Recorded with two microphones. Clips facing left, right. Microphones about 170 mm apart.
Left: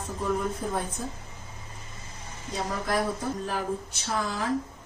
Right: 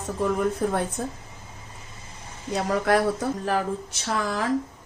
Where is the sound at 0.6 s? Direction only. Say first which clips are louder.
Right 6 dB; 70° right (ahead or behind).